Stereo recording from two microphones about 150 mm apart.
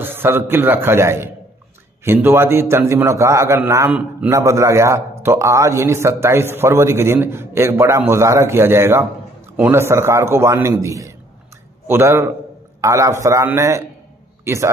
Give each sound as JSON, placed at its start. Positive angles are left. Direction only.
{"t": 0.0, "sound": "a man's voice", "side_deg": -15}